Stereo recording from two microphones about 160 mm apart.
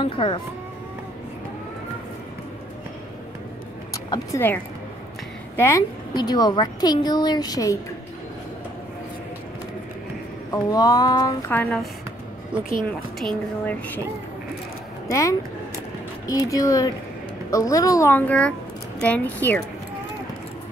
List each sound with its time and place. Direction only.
0.0 s speech: 35° left (ahead or behind)
4.1 s a woman's voice: 15° left (ahead or behind)
5.6 s a woman's voice: 20° left (ahead or behind)
10.5 s a woman's voice: 25° left (ahead or behind)
11.5 s a woman's voice: 10° left (ahead or behind)
13.7 s a woman's voice: 10° left (ahead or behind)
15.0 s a woman's voice: 20° left (ahead or behind)